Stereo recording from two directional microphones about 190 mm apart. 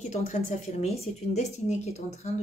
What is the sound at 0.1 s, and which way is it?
A woman's voice, 40° left (ahead or behind).